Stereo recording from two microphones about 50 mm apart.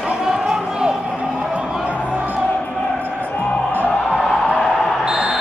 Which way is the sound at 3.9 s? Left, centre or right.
Centre.